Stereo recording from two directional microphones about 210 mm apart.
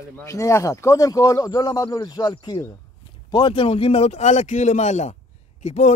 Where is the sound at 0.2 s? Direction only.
15° left (ahead or behind).